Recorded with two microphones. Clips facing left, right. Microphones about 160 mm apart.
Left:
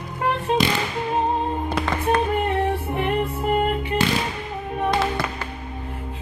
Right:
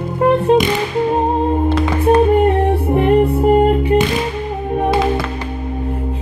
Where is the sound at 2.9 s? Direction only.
40° right (ahead or behind).